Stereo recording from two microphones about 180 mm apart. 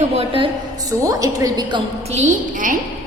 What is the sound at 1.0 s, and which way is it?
Speech, 20° right (ahead or behind).